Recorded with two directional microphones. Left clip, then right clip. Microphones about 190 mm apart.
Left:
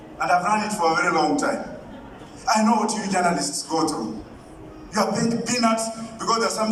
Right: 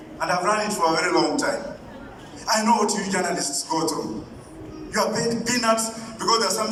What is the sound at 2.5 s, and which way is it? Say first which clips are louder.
Speech: even; 15° left (ahead or behind).